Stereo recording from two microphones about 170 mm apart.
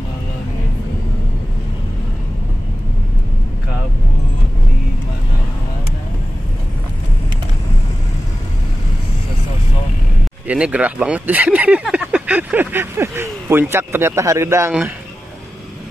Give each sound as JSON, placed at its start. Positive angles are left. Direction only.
{"t": 10.4, "sound": "speech", "side_deg": -5}